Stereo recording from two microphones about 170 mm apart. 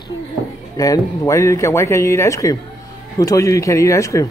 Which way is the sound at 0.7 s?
20° left (ahead or behind).